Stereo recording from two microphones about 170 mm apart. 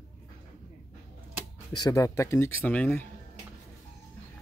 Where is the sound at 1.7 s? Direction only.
20° left (ahead or behind).